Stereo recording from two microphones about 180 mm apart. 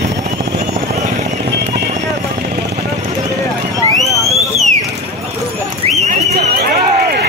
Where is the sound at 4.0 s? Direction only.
Centre (ahead or behind).